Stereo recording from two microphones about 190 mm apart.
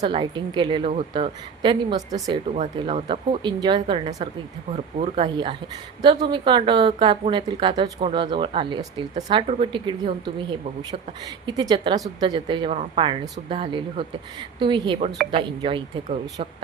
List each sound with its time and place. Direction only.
0.0 s speech: 25° right (ahead or behind)
11.4 s speech: 25° right (ahead or behind)